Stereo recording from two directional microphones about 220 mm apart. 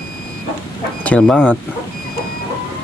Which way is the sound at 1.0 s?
5° left (ahead or behind).